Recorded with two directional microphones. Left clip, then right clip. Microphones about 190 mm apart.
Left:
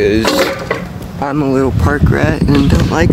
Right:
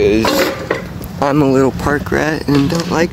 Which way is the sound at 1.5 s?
15° right (ahead or behind).